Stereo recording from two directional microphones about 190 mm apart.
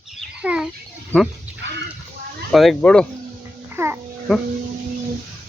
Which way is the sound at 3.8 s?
15° right (ahead or behind).